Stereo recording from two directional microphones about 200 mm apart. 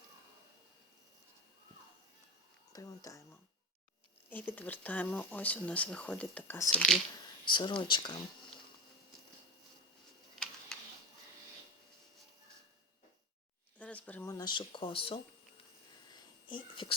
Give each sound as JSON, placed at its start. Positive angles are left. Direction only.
{"t": 2.7, "sound": "speech", "side_deg": 15}
{"t": 4.3, "sound": "speech", "side_deg": 10}
{"t": 7.5, "sound": "speech", "side_deg": 25}
{"t": 13.7, "sound": "a sound", "side_deg": 5}
{"t": 14.3, "sound": "speech", "side_deg": 20}
{"t": 16.5, "sound": "speech", "side_deg": 25}